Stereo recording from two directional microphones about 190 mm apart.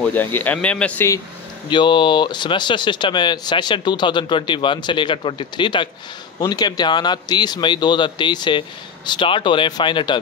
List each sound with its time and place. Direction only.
0.0 s speech: 10° left (ahead or behind)
1.7 s speech: 25° left (ahead or behind)